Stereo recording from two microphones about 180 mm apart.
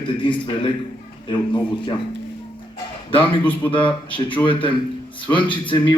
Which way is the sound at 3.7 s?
30° left (ahead or behind).